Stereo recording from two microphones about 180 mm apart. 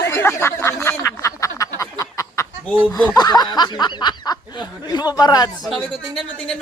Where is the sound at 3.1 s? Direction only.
20° left (ahead or behind).